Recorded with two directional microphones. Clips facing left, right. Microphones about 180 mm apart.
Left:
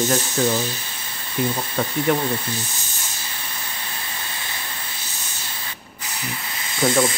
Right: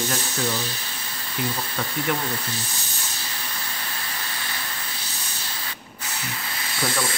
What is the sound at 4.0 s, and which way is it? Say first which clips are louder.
Steam: even; 25° left (ahead or behind).